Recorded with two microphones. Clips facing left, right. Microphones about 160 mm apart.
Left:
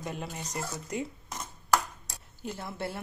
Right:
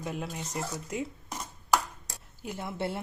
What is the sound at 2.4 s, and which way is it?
Speech, 15° right (ahead or behind).